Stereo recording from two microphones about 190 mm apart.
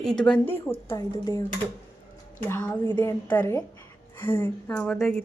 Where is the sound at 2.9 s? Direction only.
10° left (ahead or behind).